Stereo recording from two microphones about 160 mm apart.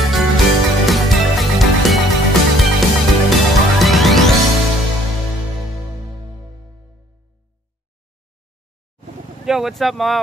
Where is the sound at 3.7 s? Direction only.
Centre (ahead or behind).